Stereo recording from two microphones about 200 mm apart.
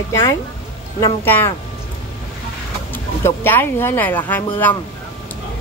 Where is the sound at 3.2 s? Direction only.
10° left (ahead or behind).